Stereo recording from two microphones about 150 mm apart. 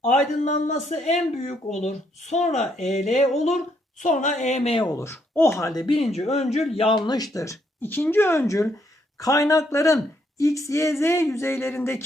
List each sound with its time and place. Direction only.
0.0 s speech: 55° left (ahead or behind)
4.9 s speech: 15° left (ahead or behind)
6.0 s speech: 45° left (ahead or behind); by 12.0 s 15° left (ahead or behind)